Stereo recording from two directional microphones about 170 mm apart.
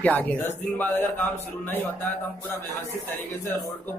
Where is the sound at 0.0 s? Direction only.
10° left (ahead or behind).